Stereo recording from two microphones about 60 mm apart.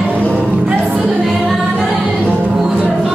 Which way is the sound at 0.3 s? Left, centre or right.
Right.